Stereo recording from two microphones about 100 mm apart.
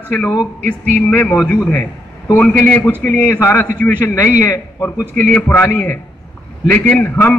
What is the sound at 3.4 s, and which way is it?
A man's voice, 30° left (ahead or behind).